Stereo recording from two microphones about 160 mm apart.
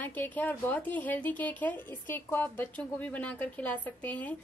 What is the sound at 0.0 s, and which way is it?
A woman's voice, 10° left (ahead or behind).